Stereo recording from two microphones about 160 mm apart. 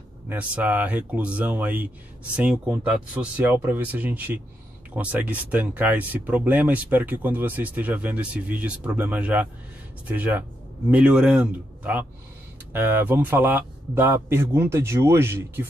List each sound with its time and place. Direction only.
0.3 s speech: 10° right (ahead or behind)
3.2 s speech: 10° right (ahead or behind)